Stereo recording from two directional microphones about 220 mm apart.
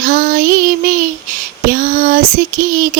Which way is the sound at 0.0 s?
35° right (ahead or behind).